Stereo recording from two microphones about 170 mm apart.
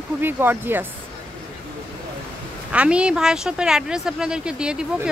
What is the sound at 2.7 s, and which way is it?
A woman's voice, 5° right (ahead or behind).